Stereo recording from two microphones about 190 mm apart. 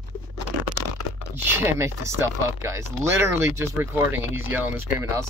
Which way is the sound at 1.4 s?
10° right (ahead or behind).